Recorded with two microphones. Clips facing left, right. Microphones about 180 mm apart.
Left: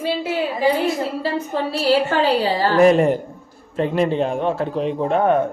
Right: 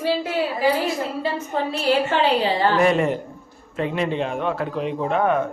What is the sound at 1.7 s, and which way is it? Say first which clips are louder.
A man's voice: left 3 dB; 35° left (ahead or behind).